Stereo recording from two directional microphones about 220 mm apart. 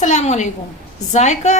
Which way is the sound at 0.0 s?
30° left (ahead or behind).